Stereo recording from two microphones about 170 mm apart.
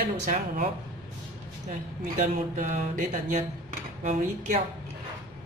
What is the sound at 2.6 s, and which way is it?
Mantra, 50° right (ahead or behind).